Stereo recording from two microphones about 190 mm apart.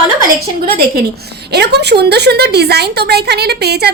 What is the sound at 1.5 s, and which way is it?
A woman's voice, 60° right (ahead or behind).